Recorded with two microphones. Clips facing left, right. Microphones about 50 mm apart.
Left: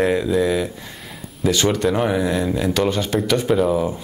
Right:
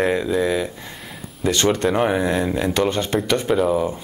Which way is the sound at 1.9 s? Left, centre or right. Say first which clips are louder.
Even; centre.